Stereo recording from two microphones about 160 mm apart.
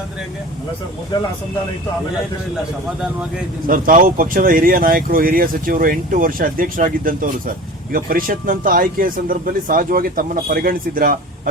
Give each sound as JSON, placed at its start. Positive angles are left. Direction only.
{"t": 3.7, "sound": "speech", "side_deg": -60}